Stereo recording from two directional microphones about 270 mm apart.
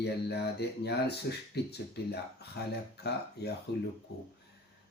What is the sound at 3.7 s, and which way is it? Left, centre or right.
Speech, left.